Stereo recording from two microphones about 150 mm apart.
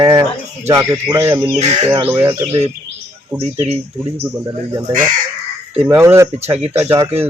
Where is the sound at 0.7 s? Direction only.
15° right (ahead or behind).